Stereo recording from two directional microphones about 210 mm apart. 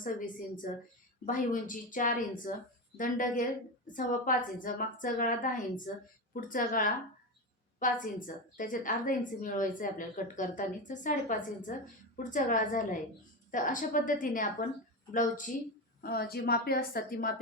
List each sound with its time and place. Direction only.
0.0 s a woman's voice: 40° left (ahead or behind)